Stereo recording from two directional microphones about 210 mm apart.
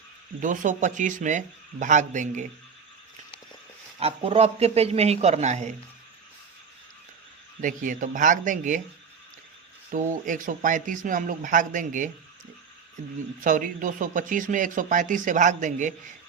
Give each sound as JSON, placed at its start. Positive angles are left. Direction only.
{"t": 0.3, "sound": "speech", "side_deg": -40}
{"t": 4.0, "sound": "speech", "side_deg": -30}
{"t": 7.6, "sound": "speech", "side_deg": -40}
{"t": 9.9, "sound": "speech", "side_deg": -40}
{"t": 13.4, "sound": "speech", "side_deg": -40}